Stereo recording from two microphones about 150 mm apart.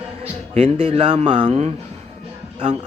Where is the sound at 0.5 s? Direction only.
40° right (ahead or behind).